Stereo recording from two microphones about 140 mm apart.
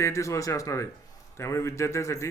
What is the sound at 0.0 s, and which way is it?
Speech, 20° left (ahead or behind).